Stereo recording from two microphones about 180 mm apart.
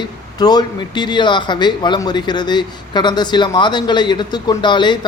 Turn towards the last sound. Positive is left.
turn(degrees=25)  # may be behind; listen again after turning